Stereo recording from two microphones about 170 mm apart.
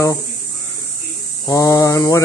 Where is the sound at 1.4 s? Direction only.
20° left (ahead or behind).